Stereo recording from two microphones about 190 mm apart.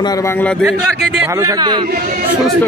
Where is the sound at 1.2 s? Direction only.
20° right (ahead or behind).